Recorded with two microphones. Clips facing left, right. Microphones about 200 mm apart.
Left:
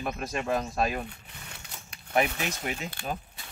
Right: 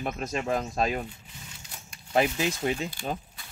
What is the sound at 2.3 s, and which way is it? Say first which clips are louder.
Speech: right 6 dB; 60° left (ahead or behind).